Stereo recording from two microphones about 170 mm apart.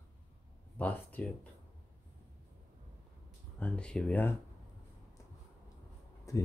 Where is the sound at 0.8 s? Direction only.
10° left (ahead or behind).